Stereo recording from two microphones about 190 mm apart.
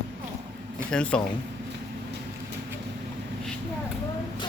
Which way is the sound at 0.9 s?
5° left (ahead or behind).